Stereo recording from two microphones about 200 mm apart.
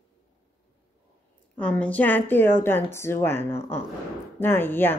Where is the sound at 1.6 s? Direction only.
5° left (ahead or behind).